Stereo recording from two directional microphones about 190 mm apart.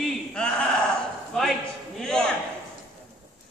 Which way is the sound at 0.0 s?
5° left (ahead or behind).